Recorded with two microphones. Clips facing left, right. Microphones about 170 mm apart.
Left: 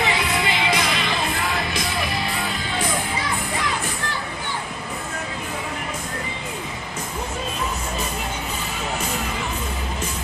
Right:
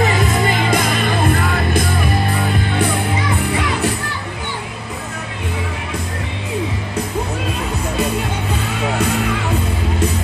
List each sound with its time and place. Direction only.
0.0 s music: 45° right (ahead or behind)
8.8 s music: 65° right (ahead or behind)